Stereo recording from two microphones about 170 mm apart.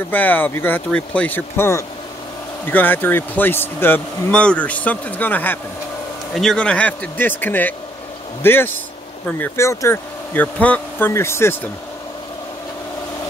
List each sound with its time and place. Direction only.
0.1 s speech: 10° left (ahead or behind)